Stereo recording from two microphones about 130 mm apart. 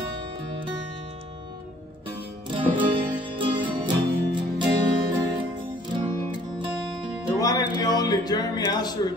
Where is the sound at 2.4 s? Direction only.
40° right (ahead or behind).